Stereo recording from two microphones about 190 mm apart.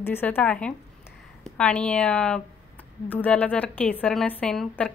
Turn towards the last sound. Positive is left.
turn(degrees=5)  # may be behind; listen again after turning